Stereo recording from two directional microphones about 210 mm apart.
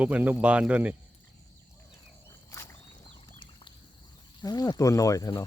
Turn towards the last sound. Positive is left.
turn(degrees=20)  # may be behind; listen again after turning